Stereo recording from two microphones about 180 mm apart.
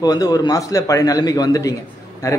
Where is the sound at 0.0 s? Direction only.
20° left (ahead or behind).